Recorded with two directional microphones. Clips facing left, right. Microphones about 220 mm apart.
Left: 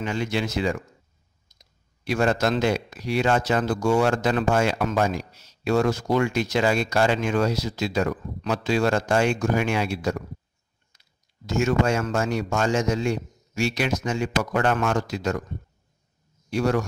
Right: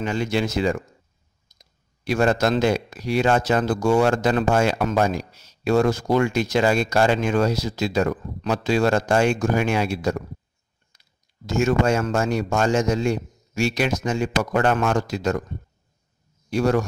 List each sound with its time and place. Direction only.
0.0 s speech: 45° right (ahead or behind)
2.0 s speech: 45° right (ahead or behind)
11.6 s speech: 45° right (ahead or behind)
16.4 s a man's voice: 40° right (ahead or behind)